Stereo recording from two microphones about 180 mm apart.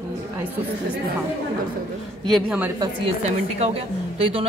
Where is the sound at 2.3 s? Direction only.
5° right (ahead or behind).